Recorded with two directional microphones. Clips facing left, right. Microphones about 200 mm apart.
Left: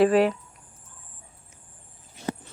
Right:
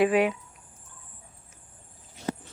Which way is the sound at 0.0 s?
Centre (ahead or behind).